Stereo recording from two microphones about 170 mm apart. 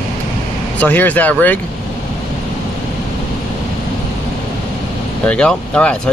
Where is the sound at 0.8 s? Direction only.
10° left (ahead or behind).